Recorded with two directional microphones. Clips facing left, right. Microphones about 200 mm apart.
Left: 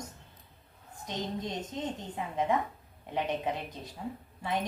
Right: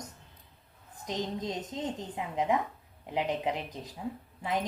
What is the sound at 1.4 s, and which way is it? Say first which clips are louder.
A woman's voice: right 1 dB; 20° right (ahead or behind).